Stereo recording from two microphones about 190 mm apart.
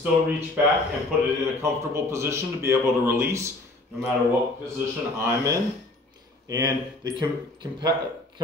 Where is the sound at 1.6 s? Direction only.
15° right (ahead or behind).